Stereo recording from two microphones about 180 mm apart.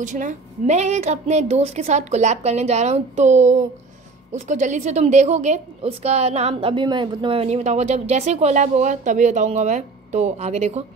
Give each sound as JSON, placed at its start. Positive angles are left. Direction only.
{"t": 0.0, "sound": "a woman's voice", "side_deg": -45}